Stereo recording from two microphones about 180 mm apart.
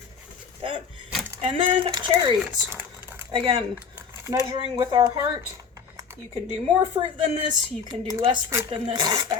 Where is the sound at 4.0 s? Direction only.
15° right (ahead or behind).